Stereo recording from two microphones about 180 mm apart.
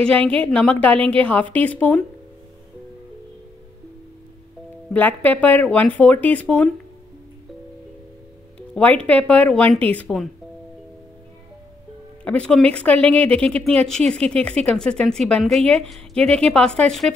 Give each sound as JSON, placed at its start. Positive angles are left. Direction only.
{"t": 0.3, "sound": "a woman's voice", "side_deg": 5}
{"t": 4.9, "sound": "a woman's voice", "side_deg": 10}
{"t": 8.5, "sound": "a woman's voice", "side_deg": 5}
{"t": 12.3, "sound": "a woman's voice", "side_deg": 5}